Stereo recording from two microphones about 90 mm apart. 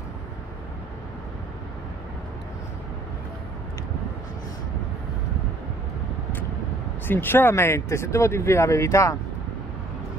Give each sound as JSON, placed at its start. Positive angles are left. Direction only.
{"t": 7.1, "sound": "speech", "side_deg": 25}